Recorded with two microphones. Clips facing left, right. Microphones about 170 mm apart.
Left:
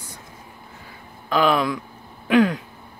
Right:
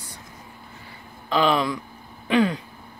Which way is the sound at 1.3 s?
5° left (ahead or behind).